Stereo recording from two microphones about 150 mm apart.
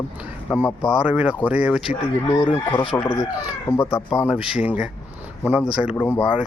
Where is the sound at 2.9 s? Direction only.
15° left (ahead or behind).